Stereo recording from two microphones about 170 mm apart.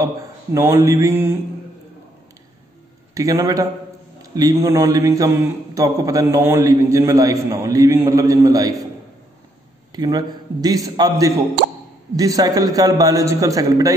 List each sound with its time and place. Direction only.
0.6 s mantra: 15° right (ahead or behind)
3.2 s a man's voice: 20° right (ahead or behind)
9.9 s a man's voice: 25° right (ahead or behind)